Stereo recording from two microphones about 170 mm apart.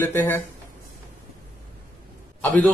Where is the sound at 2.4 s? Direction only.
10° left (ahead or behind).